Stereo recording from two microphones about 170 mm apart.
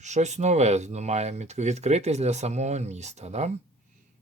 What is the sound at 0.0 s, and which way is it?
Speech, 45° right (ahead or behind).